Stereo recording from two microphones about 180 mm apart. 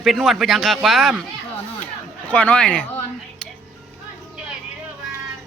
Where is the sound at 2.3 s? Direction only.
5° left (ahead or behind).